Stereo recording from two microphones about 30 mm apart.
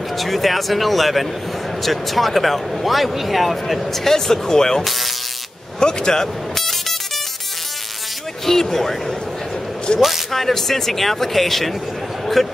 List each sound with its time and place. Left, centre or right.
0.2 s speech: centre
3.8 s speech: centre
4.8 s speech: centre
5.8 s speech: left
6.2 s music: centre
8.6 s speech: centre
9.9 s speech: centre
10.3 s speech: centre